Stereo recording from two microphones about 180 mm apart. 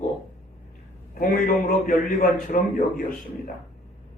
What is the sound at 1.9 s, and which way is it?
A man's voice, 50° left (ahead or behind).